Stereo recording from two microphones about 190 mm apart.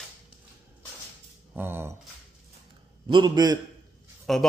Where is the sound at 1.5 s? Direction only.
10° right (ahead or behind).